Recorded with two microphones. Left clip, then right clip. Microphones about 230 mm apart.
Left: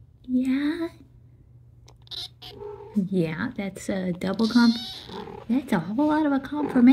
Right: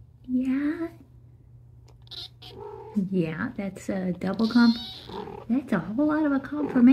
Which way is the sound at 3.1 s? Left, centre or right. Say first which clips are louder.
Left 2 dB; centre.